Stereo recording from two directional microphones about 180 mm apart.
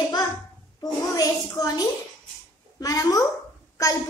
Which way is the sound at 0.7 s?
20° left (ahead or behind).